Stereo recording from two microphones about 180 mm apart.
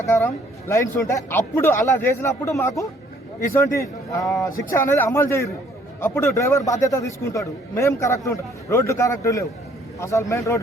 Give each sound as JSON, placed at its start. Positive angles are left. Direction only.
{"t": 0.0, "sound": "a man's voice", "side_deg": 15}